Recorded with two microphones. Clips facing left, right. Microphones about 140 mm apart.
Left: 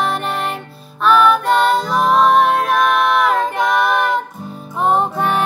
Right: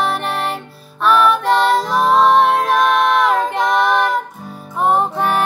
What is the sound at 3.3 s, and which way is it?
Female singing, 5° left (ahead or behind).